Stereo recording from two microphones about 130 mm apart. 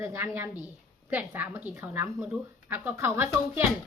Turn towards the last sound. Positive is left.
turn(degrees=-20)  # may be behind; listen again after turning